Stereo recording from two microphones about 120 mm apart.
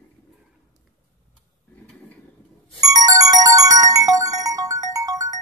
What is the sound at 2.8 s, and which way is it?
Music, 30° right (ahead or behind).